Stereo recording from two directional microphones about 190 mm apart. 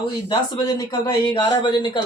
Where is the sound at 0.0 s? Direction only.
25° left (ahead or behind).